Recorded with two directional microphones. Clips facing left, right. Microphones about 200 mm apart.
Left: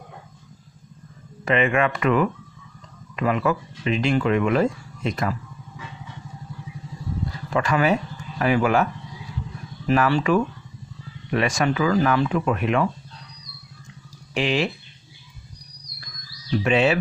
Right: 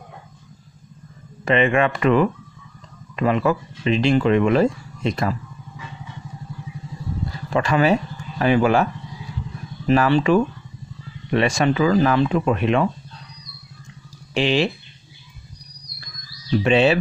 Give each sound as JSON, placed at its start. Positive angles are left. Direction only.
{"t": 1.4, "sound": "speech", "side_deg": -30}
{"t": 7.5, "sound": "speech", "side_deg": -30}
{"t": 9.8, "sound": "speech", "side_deg": -25}
{"t": 14.3, "sound": "speech", "side_deg": -30}
{"t": 16.6, "sound": "speech", "side_deg": -30}